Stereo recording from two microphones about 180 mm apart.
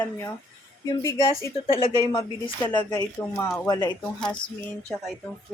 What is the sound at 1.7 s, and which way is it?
Speech, 30° left (ahead or behind).